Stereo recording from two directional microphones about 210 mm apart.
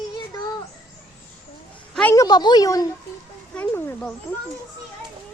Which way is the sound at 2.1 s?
15° left (ahead or behind).